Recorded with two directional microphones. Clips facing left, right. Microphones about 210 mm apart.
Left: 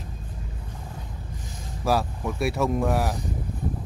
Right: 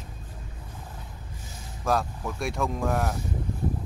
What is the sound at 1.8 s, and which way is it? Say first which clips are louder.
Speech: left 2 dB; 5° left (ahead or behind).